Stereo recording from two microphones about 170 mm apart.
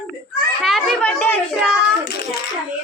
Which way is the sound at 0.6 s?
Centre (ahead or behind).